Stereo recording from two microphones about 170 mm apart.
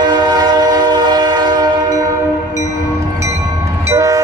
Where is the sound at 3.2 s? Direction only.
15° right (ahead or behind).